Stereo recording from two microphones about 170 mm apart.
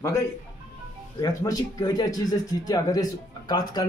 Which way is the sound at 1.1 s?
20° left (ahead or behind).